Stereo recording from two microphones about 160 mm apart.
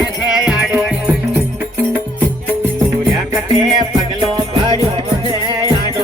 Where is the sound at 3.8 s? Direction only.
30° right (ahead or behind).